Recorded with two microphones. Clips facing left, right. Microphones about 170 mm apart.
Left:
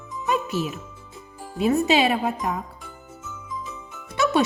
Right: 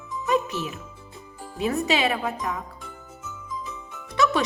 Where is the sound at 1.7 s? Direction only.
25° left (ahead or behind).